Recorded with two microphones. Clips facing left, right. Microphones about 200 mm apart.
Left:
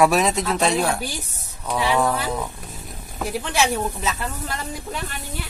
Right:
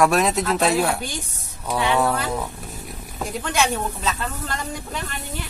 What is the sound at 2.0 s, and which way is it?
Speech, centre (ahead or behind).